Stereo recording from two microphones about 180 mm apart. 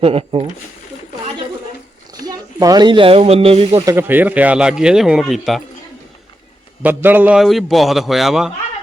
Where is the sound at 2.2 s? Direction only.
20° right (ahead or behind).